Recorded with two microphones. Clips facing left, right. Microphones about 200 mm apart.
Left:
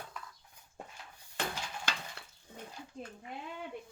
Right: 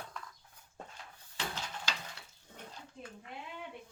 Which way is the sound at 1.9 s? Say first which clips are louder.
Left 3 dB; 55° left (ahead or behind).